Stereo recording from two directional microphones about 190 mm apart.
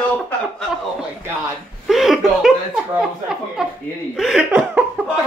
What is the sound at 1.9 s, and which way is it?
Laughter, centre (ahead or behind).